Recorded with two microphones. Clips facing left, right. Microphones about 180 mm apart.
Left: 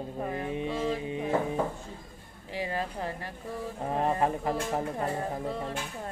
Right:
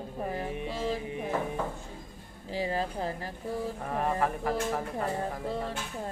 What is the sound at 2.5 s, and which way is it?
Speech, 30° right (ahead or behind).